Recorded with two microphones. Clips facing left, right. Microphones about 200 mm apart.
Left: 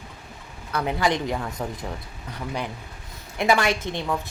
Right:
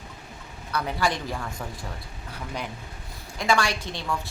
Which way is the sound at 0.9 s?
20° left (ahead or behind).